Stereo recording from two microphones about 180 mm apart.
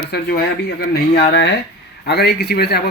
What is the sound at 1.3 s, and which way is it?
A man's voice, 75° left (ahead or behind).